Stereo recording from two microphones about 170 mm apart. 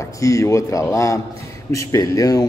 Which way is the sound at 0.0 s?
20° left (ahead or behind).